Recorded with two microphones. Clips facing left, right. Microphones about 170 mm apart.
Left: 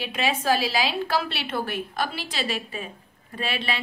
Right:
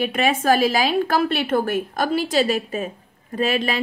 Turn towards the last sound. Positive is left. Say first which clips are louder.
# right 8 dB
turn(degrees=-40)  # may be behind; listen again after turning